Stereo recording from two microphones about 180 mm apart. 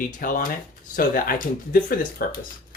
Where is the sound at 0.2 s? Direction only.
45° left (ahead or behind).